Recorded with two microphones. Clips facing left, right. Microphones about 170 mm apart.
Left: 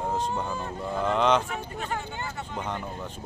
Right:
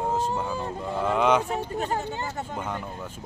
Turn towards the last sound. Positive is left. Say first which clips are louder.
# even
turn(degrees=-5)  # may be behind; listen again after turning